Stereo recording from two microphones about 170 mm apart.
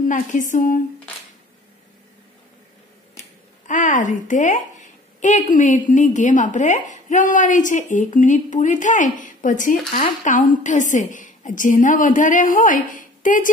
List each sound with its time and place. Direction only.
0.0 s a woman's voice: 50° left (ahead or behind)
3.6 s a woman's voice: 50° left (ahead or behind)